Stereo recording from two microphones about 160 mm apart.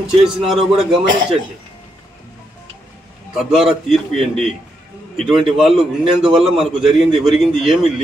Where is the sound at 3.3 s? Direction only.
Centre (ahead or behind).